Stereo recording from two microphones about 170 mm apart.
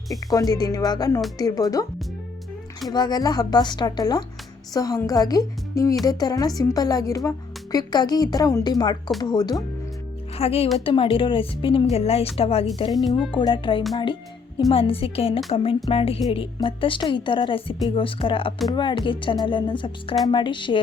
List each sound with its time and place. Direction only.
0.3 s a woman's voice: 20° left (ahead or behind)
2.9 s a woman's voice: 25° left (ahead or behind)
10.3 s a woman's voice: 35° left (ahead or behind)